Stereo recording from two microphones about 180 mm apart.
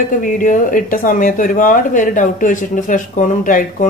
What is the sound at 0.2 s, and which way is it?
Speech, 45° left (ahead or behind).